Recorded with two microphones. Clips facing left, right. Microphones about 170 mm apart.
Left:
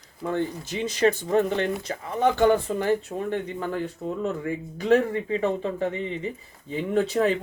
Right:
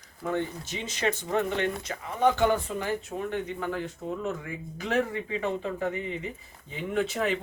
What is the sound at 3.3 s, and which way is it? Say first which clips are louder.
Speech: left 2 dB; 35° left (ahead or behind).